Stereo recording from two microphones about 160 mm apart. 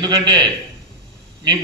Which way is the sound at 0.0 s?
25° right (ahead or behind).